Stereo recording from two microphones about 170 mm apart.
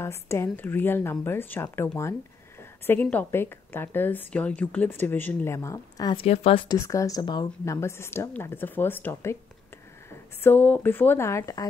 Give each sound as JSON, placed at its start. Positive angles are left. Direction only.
{"t": 0.0, "sound": "a woman's voice", "side_deg": 15}
{"t": 6.1, "sound": "speech", "side_deg": 35}
{"t": 6.9, "sound": "a woman's voice", "side_deg": 20}